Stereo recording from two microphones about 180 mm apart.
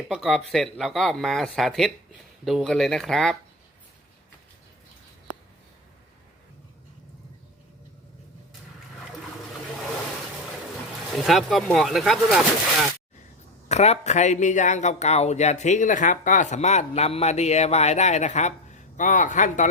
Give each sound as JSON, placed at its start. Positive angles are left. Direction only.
{"t": 0.1, "sound": "speech", "side_deg": 0}
{"t": 11.1, "sound": "speech", "side_deg": 0}
{"t": 13.7, "sound": "speech", "side_deg": 35}